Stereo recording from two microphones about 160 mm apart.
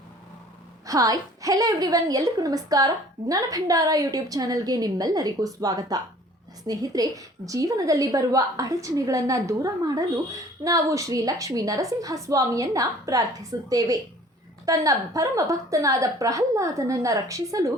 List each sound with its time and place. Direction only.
0.9 s a woman's voice: 20° right (ahead or behind)